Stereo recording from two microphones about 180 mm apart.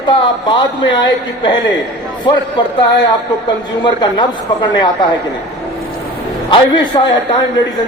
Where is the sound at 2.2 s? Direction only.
25° left (ahead or behind).